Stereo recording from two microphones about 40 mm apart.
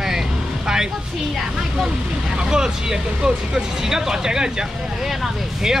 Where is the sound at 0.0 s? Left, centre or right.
Centre.